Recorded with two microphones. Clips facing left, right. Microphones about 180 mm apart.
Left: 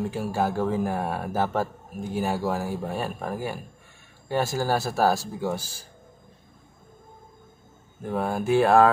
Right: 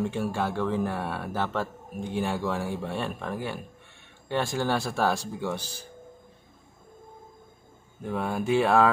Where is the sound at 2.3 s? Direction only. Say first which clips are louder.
Left 3 dB; 40° left (ahead or behind).